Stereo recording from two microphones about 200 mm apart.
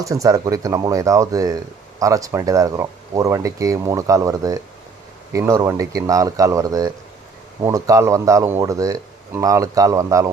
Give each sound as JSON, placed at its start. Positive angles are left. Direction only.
{"t": 0.0, "sound": "speech", "side_deg": -15}